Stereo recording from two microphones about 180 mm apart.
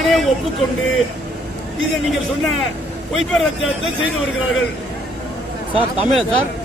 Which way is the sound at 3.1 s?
Centre (ahead or behind).